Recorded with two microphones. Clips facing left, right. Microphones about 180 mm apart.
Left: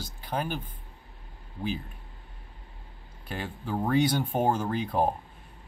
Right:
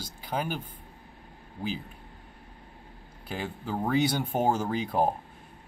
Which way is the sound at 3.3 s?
5° right (ahead or behind).